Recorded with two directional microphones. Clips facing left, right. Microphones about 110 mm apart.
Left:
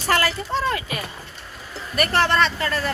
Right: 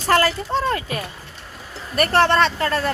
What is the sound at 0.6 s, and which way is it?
Speech, 40° right (ahead or behind).